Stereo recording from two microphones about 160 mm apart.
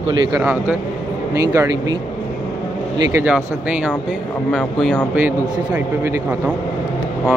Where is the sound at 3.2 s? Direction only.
10° right (ahead or behind).